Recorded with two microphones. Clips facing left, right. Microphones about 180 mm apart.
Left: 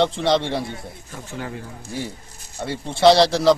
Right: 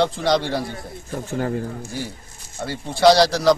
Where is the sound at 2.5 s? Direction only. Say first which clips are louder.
Even; centre (ahead or behind).